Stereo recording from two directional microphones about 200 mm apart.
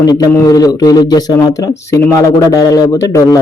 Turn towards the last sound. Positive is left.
turn(degrees=15)  # may be behind; listen again after turning